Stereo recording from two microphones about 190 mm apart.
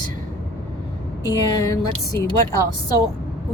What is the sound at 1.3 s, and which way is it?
Speech, 20° left (ahead or behind).